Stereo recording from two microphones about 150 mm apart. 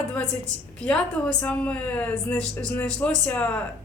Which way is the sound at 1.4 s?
10° left (ahead or behind).